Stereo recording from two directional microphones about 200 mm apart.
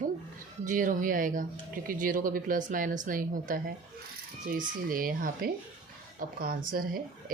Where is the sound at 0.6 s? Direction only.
40° right (ahead or behind).